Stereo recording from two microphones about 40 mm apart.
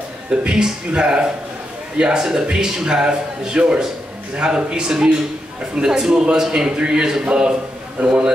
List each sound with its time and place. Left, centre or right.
0.5 s a man's voice: right
8.0 s a man's voice: right